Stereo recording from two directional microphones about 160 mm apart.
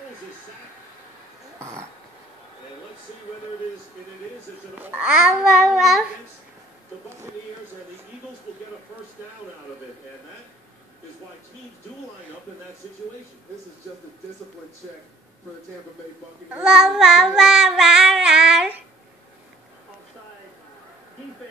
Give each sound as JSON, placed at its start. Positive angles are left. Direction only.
{"t": 1.6, "sound": "a sound", "side_deg": -15}
{"t": 4.7, "sound": "a child's voice", "side_deg": -10}
{"t": 16.4, "sound": "child singing", "side_deg": -5}